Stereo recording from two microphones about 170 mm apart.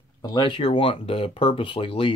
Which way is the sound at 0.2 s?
25° left (ahead or behind).